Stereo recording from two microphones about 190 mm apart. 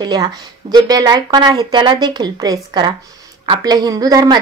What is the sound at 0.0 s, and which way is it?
Speech, 20° right (ahead or behind).